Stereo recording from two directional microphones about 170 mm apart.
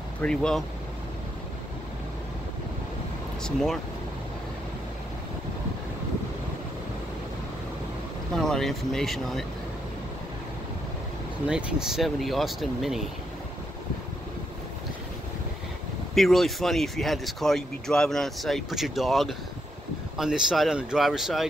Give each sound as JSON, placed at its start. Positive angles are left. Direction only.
{"t": 0.2, "sound": "speech", "side_deg": 5}
{"t": 3.4, "sound": "speech", "side_deg": 0}
{"t": 8.4, "sound": "speech", "side_deg": 0}
{"t": 11.4, "sound": "speech", "side_deg": -5}
{"t": 16.2, "sound": "speech", "side_deg": 0}